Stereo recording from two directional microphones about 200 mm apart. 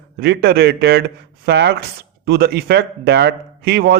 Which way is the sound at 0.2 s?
55° right (ahead or behind).